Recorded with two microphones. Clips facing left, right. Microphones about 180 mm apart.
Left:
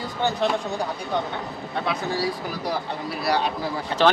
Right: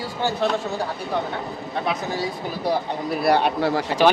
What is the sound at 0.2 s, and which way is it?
Speech, 10° right (ahead or behind).